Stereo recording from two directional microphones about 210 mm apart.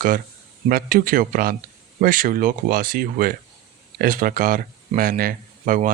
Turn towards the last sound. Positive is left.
turn(degrees=-40)  # may be behind; listen again after turning